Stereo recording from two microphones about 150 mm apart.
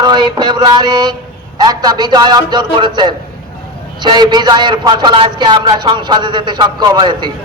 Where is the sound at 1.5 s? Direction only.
25° right (ahead or behind).